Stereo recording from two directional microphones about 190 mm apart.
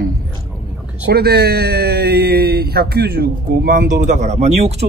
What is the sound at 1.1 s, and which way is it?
Speech, 55° right (ahead or behind).